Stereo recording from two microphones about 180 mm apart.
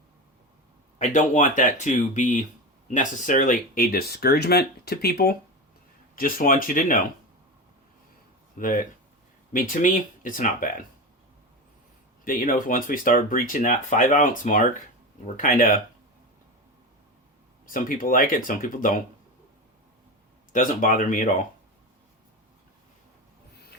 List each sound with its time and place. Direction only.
0.9 s speech: 45° left (ahead or behind)
8.5 s speech: 50° left (ahead or behind)
12.2 s speech: 50° left (ahead or behind)
17.7 s speech: 50° left (ahead or behind)
20.5 s speech: 50° left (ahead or behind)